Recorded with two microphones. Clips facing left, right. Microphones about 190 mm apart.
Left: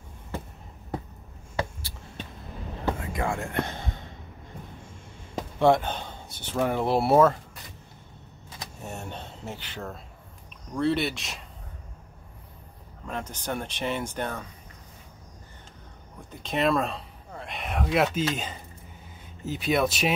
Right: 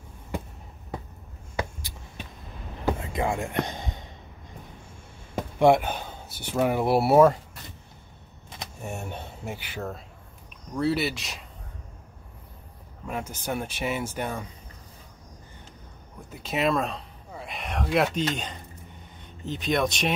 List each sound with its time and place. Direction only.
1.6 s a sound: 15° right (ahead or behind)
3.1 s speech: 20° right (ahead or behind)
5.6 s speech: 10° right (ahead or behind)
8.8 s speech: 10° right (ahead or behind)
13.0 s speech: 10° right (ahead or behind)
16.3 s speech: 5° right (ahead or behind)